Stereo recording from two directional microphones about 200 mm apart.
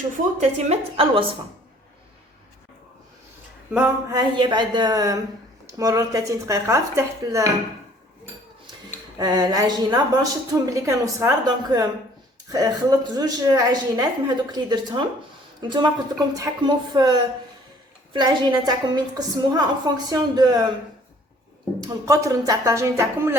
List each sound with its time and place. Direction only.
0.3 s a woman's voice: 30° right (ahead or behind)
4.1 s a woman's voice: 20° right (ahead or behind)
9.1 s a woman's voice: 20° right (ahead or behind)
21.8 s speech: 15° right (ahead or behind)